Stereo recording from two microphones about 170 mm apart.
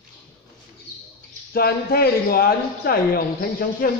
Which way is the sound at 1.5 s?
65° left (ahead or behind).